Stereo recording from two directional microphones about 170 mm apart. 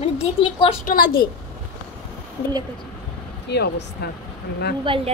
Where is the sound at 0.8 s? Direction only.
55° left (ahead or behind).